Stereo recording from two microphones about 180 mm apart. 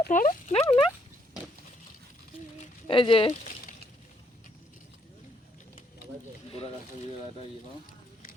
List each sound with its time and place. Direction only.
0.0 s speech: 45° left (ahead or behind)
2.8 s speech: 30° left (ahead or behind)